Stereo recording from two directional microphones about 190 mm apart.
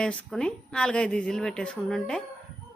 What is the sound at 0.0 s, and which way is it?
Speech, 5° left (ahead or behind).